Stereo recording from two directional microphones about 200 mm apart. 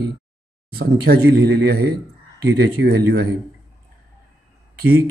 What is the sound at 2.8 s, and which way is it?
Speech, 55° right (ahead or behind).